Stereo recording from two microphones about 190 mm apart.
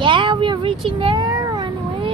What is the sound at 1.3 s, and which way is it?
Cat, 15° right (ahead or behind).